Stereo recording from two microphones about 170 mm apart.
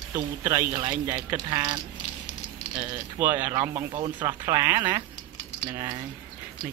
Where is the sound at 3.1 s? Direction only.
10° right (ahead or behind).